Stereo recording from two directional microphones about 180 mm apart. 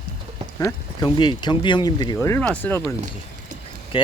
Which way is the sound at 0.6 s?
25° left (ahead or behind).